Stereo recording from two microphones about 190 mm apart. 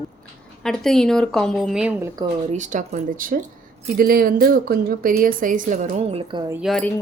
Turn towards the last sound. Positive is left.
turn(degrees=5)  # may be behind; listen again after turning